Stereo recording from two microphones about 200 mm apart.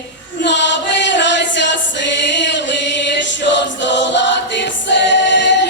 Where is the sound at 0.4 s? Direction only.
65° left (ahead or behind).